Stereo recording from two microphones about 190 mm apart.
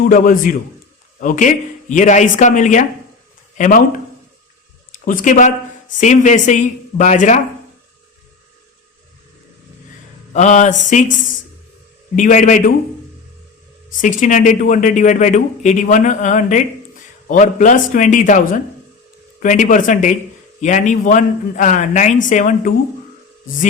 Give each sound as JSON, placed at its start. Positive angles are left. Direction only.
{"t": 0.0, "sound": "speech", "side_deg": 45}
{"t": 5.0, "sound": "speech", "side_deg": 45}
{"t": 10.3, "sound": "speech", "side_deg": 40}
{"t": 12.1, "sound": "speech", "side_deg": 40}
{"t": 14.0, "sound": "speech", "side_deg": 45}